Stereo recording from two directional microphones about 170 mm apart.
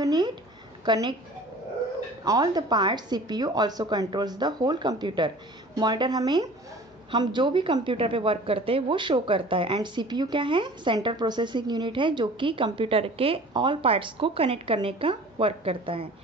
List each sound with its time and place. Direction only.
0.0 s a sound: 25° right (ahead or behind)
0.8 s a woman's voice: 25° right (ahead or behind)
2.2 s a woman's voice: 25° right (ahead or behind)